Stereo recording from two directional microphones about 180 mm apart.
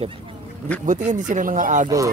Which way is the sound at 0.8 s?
45° right (ahead or behind).